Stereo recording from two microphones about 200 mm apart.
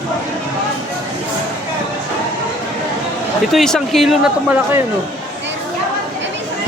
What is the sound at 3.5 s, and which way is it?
Speech, centre (ahead or behind).